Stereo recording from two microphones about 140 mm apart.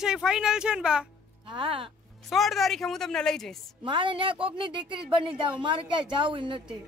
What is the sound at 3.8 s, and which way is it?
Speech, 35° right (ahead or behind).